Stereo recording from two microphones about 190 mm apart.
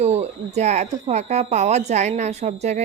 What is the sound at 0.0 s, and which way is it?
Speech, 35° right (ahead or behind).